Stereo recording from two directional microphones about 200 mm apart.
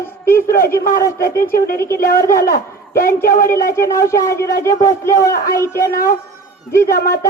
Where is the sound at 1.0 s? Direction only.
15° left (ahead or behind).